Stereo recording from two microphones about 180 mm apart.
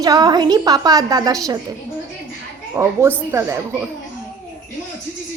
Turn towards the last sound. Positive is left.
turn(degrees=-15)  # may be behind; listen again after turning